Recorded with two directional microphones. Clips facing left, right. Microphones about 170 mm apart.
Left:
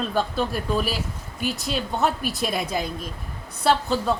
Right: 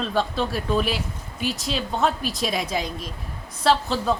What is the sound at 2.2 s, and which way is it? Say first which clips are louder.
Speech: even; 60° left (ahead or behind).